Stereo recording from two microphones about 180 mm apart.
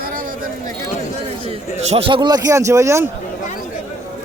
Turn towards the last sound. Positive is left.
turn(degrees=-15)  # may be behind; listen again after turning